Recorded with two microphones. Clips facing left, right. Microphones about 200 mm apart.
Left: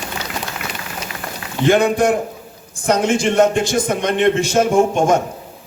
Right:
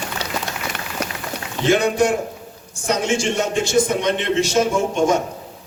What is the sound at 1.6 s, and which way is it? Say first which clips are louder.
A man's voice: left 3 dB; 55° left (ahead or behind).